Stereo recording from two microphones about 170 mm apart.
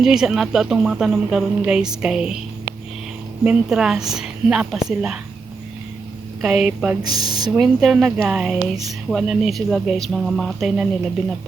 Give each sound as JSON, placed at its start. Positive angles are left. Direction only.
{"t": 0.0, "sound": "a woman's voice", "side_deg": -5}
{"t": 3.4, "sound": "a woman's voice", "side_deg": -5}
{"t": 6.4, "sound": "a woman's voice", "side_deg": -5}
{"t": 7.0, "sound": "speech", "side_deg": -25}
{"t": 7.5, "sound": "a woman's voice", "side_deg": 0}